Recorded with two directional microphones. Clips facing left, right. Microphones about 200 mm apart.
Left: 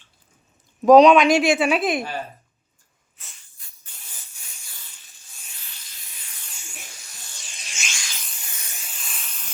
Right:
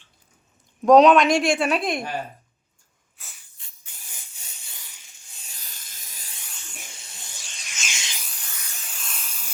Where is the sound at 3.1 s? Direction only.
Centre (ahead or behind).